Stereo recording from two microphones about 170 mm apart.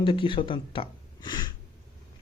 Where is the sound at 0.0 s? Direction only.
30° left (ahead or behind).